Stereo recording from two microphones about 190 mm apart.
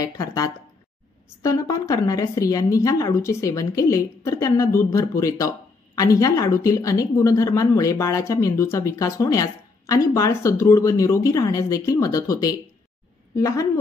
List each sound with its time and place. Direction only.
0.0 s a woman's voice: 20° left (ahead or behind)